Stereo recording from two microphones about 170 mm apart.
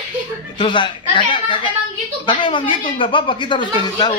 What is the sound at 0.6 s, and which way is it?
Speech, 25° left (ahead or behind).